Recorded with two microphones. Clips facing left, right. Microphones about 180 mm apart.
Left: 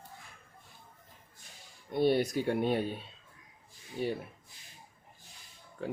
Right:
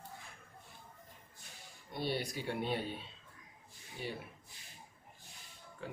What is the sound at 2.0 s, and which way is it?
Speech, 50° left (ahead or behind).